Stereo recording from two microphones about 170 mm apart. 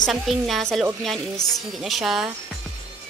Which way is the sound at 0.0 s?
Centre (ahead or behind).